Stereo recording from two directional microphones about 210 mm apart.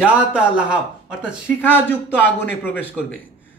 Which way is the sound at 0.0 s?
5° right (ahead or behind).